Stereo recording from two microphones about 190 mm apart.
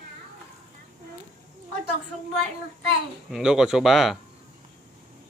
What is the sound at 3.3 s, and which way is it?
Speech, 5° right (ahead or behind).